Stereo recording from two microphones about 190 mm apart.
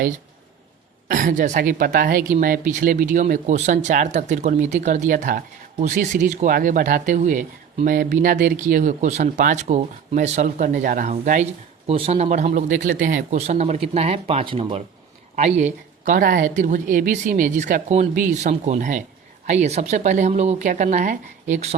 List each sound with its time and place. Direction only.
1.0 s a woman's voice: 45° right (ahead or behind)